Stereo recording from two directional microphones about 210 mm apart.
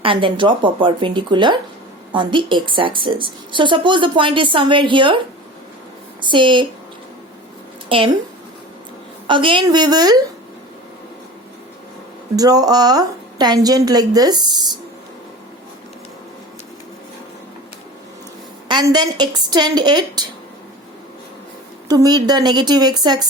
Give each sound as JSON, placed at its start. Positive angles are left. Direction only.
{"t": 0.0, "sound": "a woman's voice", "side_deg": -25}
{"t": 6.2, "sound": "a woman's voice", "side_deg": -25}
{"t": 7.9, "sound": "a woman's voice", "side_deg": -25}
{"t": 9.2, "sound": "a woman's voice", "side_deg": -25}
{"t": 12.4, "sound": "a woman's voice", "side_deg": -20}
{"t": 18.7, "sound": "a woman's voice", "side_deg": -20}
{"t": 21.8, "sound": "a woman's voice", "side_deg": -20}